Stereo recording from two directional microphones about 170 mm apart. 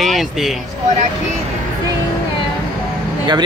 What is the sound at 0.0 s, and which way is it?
Speech, centre (ahead or behind).